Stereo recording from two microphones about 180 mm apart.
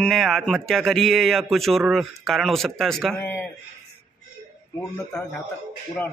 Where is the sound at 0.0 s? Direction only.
Centre (ahead or behind).